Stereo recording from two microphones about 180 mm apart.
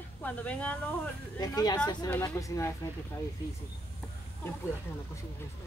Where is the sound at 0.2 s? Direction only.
10° left (ahead or behind).